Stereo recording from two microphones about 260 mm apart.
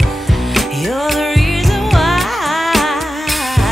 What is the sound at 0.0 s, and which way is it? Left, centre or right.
Music, centre.